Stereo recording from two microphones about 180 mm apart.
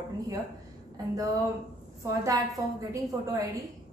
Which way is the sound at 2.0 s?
15° right (ahead or behind).